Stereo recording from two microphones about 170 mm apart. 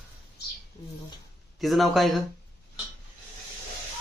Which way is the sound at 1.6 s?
Centre (ahead or behind).